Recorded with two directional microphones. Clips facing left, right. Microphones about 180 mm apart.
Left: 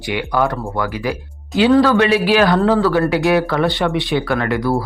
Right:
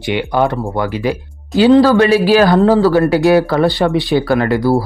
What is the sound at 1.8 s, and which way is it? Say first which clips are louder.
Speech: right 4 dB; 35° right (ahead or behind).